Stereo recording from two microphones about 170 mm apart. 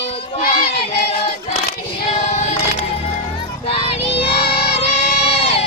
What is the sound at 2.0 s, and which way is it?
Music, 40° left (ahead or behind).